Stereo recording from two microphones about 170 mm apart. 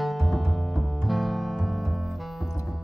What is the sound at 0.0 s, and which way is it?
Music, centre (ahead or behind).